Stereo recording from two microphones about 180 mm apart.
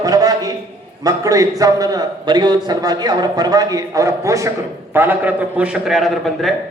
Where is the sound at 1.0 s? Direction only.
20° right (ahead or behind).